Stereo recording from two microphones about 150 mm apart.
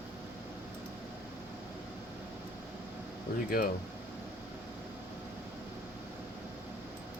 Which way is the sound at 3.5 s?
70° left (ahead or behind).